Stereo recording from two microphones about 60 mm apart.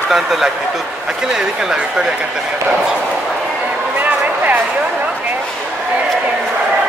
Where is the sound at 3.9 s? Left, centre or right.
Right.